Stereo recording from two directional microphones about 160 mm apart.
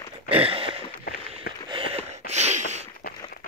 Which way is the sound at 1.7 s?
35° right (ahead or behind).